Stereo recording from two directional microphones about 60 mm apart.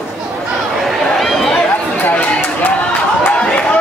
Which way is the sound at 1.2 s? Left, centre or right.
Centre.